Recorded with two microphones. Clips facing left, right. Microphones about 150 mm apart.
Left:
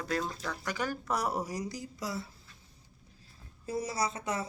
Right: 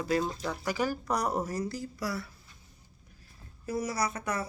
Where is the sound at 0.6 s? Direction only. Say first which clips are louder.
Right 4 dB; 5° right (ahead or behind); by 2.3 s 20° left (ahead or behind).